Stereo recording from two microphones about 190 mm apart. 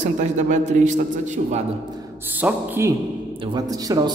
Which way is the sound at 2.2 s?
10° right (ahead or behind).